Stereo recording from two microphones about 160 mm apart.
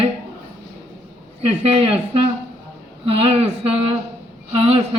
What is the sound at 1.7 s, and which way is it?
Speech, 40° right (ahead or behind).